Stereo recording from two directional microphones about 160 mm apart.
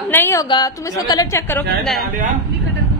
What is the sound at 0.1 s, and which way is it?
A woman's voice, 15° left (ahead or behind).